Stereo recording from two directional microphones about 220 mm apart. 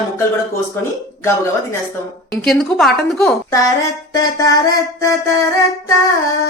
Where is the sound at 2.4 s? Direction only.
Centre (ahead or behind).